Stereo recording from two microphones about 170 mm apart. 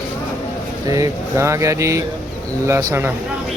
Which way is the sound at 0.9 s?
20° right (ahead or behind).